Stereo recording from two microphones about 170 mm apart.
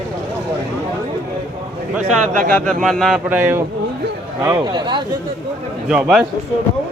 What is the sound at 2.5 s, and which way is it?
A man's voice, 5° left (ahead or behind).